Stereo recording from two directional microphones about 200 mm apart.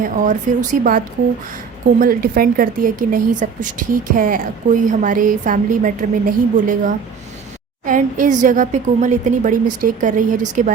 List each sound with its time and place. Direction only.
0.0 s a woman's voice: 40° right (ahead or behind)